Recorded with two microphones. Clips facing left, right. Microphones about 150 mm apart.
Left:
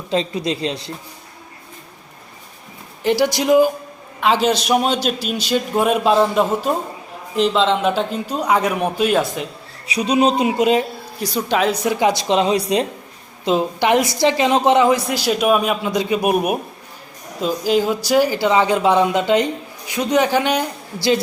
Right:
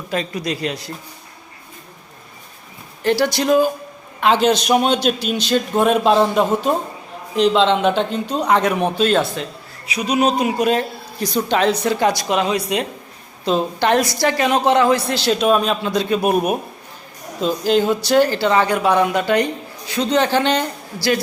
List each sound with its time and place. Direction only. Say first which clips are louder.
0.1 s speech: left 3 dB; 25° left (ahead or behind)
3.0 s a woman's voice: even; 15° left (ahead or behind)
4.2 s a man's voice: right 1 dB; centre (ahead or behind)
9.8 s speech: left 2 dB; 35° left (ahead or behind)
11.2 s a woman's voice: right 1 dB; 5° left (ahead or behind); by 12.9 s 30° left (ahead or behind)
13.4 s a woman's voice: left 1 dB; 15° left (ahead or behind)